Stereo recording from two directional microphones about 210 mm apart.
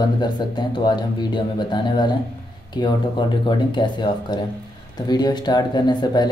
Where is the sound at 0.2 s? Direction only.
20° left (ahead or behind).